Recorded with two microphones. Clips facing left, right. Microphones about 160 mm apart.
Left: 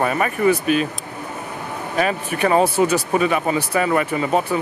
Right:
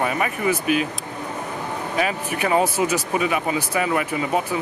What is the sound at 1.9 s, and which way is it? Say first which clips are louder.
Speech: left 4 dB; 40° left (ahead or behind).